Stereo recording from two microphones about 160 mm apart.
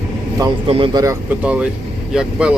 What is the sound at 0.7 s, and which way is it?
Speech, 35° right (ahead or behind).